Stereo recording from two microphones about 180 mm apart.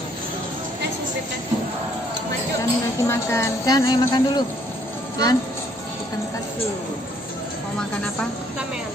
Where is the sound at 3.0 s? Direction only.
15° left (ahead or behind).